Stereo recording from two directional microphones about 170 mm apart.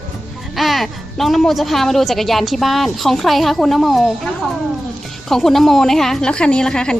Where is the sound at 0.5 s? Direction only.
Centre (ahead or behind).